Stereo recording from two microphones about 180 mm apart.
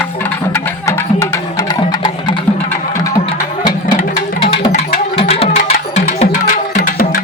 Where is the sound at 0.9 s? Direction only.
15° left (ahead or behind).